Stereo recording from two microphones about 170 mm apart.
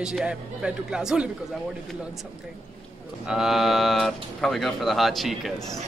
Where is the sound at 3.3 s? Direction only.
Centre (ahead or behind).